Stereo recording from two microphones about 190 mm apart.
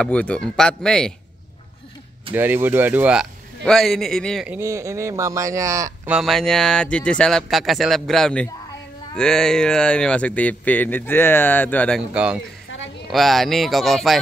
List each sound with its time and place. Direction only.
0.0 s speech: 5° left (ahead or behind)
2.3 s speech: 10° right (ahead or behind)
4.5 s speech: 15° right (ahead or behind)
6.1 s speech: centre (ahead or behind)
12.1 s speech: 5° right (ahead or behind)